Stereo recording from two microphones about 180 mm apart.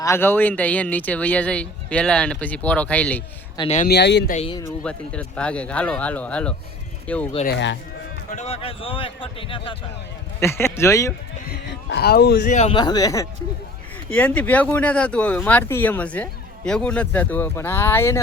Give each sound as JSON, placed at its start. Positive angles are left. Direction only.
{"t": 0.0, "sound": "speech", "side_deg": 15}
{"t": 3.8, "sound": "speech", "side_deg": 70}
{"t": 4.8, "sound": "speech", "side_deg": 5}
{"t": 8.3, "sound": "a man's voice", "side_deg": 35}
{"t": 10.4, "sound": "speech", "side_deg": 15}
{"t": 11.4, "sound": "speech", "side_deg": 70}
{"t": 12.7, "sound": "speech", "side_deg": 25}
{"t": 14.1, "sound": "speech", "side_deg": 10}